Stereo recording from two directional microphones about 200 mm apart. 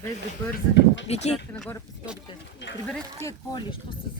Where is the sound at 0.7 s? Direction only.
65° left (ahead or behind).